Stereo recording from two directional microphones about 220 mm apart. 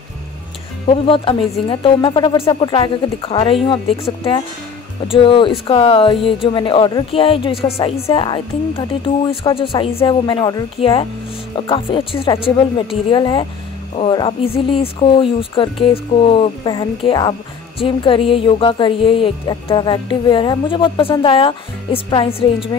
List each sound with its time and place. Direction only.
0.8 s speech: 25° left (ahead or behind)